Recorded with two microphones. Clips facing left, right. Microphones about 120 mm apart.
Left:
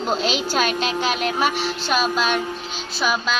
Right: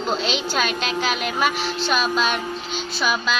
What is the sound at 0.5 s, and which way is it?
Speech, 40° left (ahead or behind).